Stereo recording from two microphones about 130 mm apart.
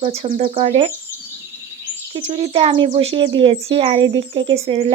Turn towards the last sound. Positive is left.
turn(degrees=-50)  # may be behind; listen again after turning